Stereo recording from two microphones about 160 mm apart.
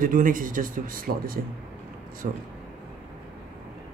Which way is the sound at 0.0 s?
60° right (ahead or behind).